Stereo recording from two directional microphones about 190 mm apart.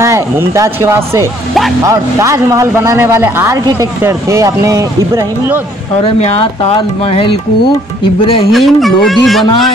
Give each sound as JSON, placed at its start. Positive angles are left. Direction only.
{"t": 0.0, "sound": "a man's voice", "side_deg": -15}
{"t": 6.0, "sound": "speech", "side_deg": 30}
{"t": 8.5, "sound": "speech", "side_deg": 0}